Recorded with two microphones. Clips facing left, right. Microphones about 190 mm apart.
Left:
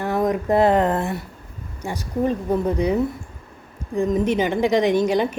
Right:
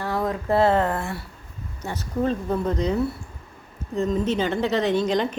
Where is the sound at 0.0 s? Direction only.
20° left (ahead or behind).